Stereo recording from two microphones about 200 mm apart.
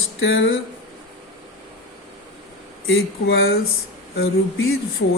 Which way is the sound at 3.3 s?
50° left (ahead or behind).